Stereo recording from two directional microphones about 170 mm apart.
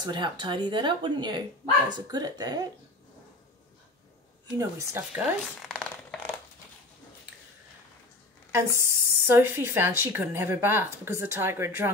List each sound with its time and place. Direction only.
0.0 s speech: 25° right (ahead or behind)
4.6 s speech: 15° right (ahead or behind)
5.7 s a sound: 5° left (ahead or behind)
8.5 s speech: 15° right (ahead or behind)